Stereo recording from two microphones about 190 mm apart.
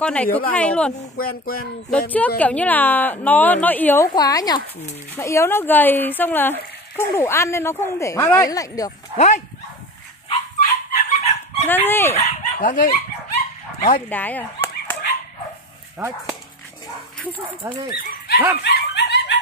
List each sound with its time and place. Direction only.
0.0 s speech: 5° left (ahead or behind)
1.1 s a sound: 50° left (ahead or behind)
1.9 s speech: 10° left (ahead or behind)
9.1 s speech: 35° left (ahead or behind)
10.6 s dog: 35° left (ahead or behind)
11.6 s speech: 10° left (ahead or behind)
12.2 s speech: 45° left (ahead or behind)
14.0 s a sound: 10° left (ahead or behind)
16.0 s speech: 10° right (ahead or behind)
17.6 s speech: 10° right (ahead or behind)
18.6 s dog: 60° left (ahead or behind)